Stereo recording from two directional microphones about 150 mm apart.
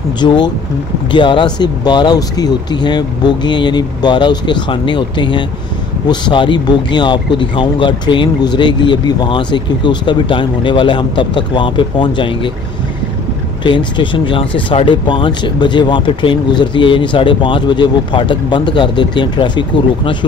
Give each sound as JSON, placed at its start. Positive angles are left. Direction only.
{"t": 0.2, "sound": "speech", "side_deg": 30}
{"t": 13.7, "sound": "speech", "side_deg": 30}